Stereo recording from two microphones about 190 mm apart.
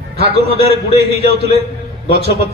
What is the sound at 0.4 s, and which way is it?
A man's voice, 55° right (ahead or behind).